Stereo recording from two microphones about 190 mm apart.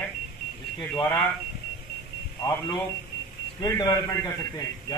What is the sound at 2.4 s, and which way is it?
A man's voice, 20° left (ahead or behind).